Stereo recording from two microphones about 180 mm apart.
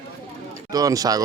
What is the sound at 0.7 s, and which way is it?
Speech, 20° right (ahead or behind).